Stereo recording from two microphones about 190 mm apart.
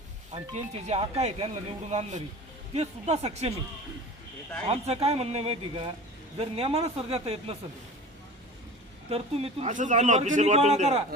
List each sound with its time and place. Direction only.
0.3 s speech: 35° right (ahead or behind)
4.7 s speech: 30° right (ahead or behind)
9.0 s speech: 30° right (ahead or behind)